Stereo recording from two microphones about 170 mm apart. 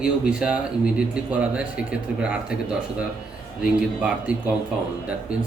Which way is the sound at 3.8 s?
5° right (ahead or behind).